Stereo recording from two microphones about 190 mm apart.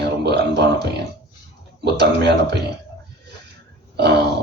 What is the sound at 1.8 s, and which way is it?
Speech, 60° right (ahead or behind).